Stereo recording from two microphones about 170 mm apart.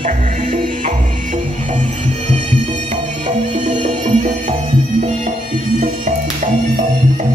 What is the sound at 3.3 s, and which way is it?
Music, 45° right (ahead or behind).